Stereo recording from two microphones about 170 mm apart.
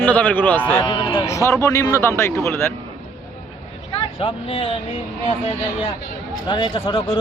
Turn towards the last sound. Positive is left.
turn(degrees=30)  # may be behind; listen again after turning